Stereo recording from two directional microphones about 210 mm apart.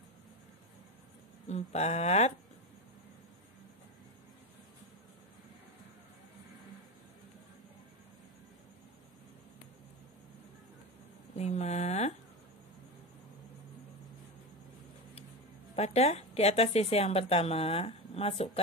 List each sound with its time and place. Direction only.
1.5 s speech: 30° left (ahead or behind)
11.3 s a sound: 30° left (ahead or behind)
15.7 s speech: 30° left (ahead or behind)